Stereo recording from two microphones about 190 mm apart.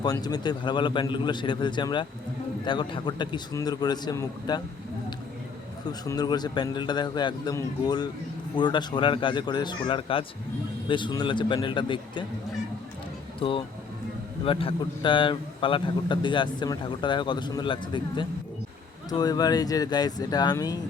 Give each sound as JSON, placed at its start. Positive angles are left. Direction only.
{"t": 0.0, "sound": "a man's voice", "side_deg": 20}
{"t": 6.1, "sound": "a man's voice", "side_deg": 20}
{"t": 13.4, "sound": "a man's voice", "side_deg": 25}